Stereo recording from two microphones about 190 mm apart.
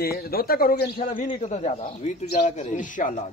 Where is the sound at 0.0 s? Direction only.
55° left (ahead or behind).